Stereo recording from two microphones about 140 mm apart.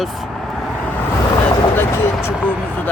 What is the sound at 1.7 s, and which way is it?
Vehicle, 15° left (ahead or behind).